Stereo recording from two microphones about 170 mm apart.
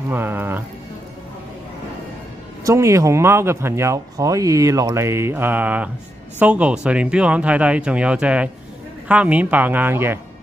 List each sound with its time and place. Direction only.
0.1 s speech: 10° right (ahead or behind)
2.6 s speech: 15° right (ahead or behind)